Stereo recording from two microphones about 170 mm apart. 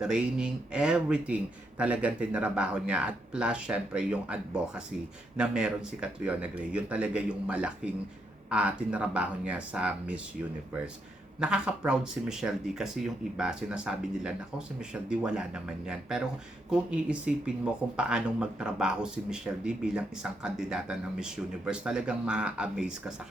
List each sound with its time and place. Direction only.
0.0 s a man's voice: 5° right (ahead or behind)
11.3 s speech: 5° right (ahead or behind)